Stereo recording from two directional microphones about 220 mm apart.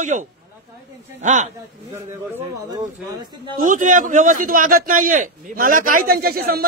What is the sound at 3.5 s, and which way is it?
A man's voice, 35° right (ahead or behind).